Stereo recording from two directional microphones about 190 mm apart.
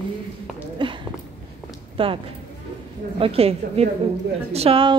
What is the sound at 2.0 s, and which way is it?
Speech, 30° right (ahead or behind).